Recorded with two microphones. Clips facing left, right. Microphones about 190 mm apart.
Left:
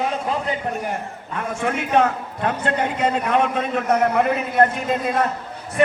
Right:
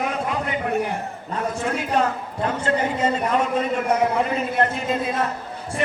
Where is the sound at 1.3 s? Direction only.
60° left (ahead or behind).